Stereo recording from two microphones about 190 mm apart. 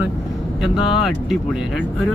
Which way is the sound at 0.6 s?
5° right (ahead or behind).